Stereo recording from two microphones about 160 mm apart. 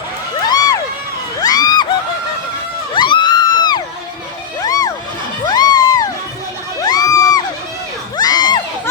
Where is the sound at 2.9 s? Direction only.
30° left (ahead or behind).